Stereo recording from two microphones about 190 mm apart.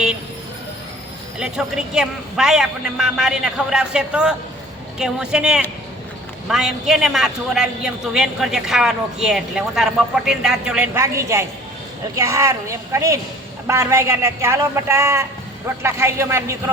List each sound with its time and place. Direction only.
1.4 s a man's voice: 5° right (ahead or behind)
10.9 s speech: 15° right (ahead or behind)